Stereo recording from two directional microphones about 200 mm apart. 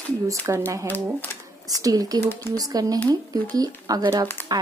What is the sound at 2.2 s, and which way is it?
Speech, 10° left (ahead or behind).